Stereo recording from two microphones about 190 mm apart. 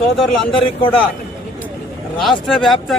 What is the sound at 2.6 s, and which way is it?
Speech, centre (ahead or behind).